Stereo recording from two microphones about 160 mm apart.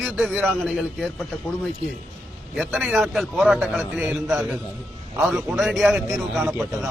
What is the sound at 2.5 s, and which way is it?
A man's voice, 5° right (ahead or behind).